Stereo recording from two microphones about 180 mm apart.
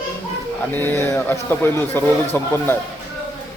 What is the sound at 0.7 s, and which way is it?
Speech, 10° left (ahead or behind).